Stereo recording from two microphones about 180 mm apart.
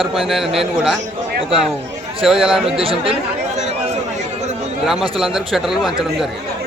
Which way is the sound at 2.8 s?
30° right (ahead or behind).